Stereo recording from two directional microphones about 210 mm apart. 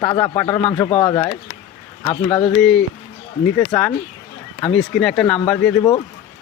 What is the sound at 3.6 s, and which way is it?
A man's voice, 5° left (ahead or behind).